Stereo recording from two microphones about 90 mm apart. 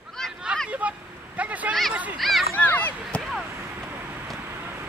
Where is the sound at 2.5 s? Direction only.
20° left (ahead or behind).